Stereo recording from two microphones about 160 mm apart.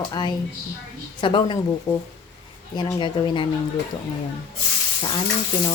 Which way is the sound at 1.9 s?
40° left (ahead or behind).